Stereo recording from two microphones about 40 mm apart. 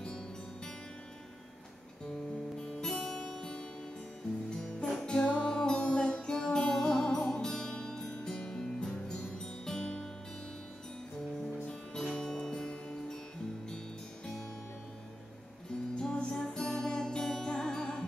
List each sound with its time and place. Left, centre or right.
2.5 s music: centre
11.9 s music: centre
16.0 s music: left